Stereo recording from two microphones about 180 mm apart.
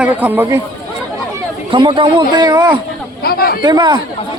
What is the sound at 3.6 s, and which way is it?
Speech, 25° right (ahead or behind).